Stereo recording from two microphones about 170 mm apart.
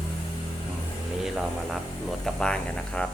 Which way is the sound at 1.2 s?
Centre (ahead or behind).